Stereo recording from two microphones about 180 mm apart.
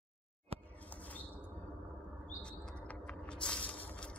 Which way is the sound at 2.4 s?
5° left (ahead or behind).